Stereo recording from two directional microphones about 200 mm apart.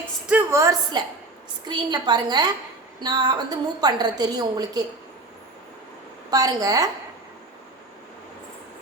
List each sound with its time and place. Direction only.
0.3 s a woman's voice: 10° right (ahead or behind)
6.3 s a woman's voice: 20° right (ahead or behind)